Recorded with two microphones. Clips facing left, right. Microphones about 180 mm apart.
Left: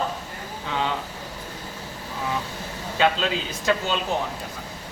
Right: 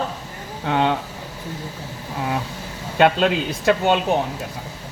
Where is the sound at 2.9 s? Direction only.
60° right (ahead or behind).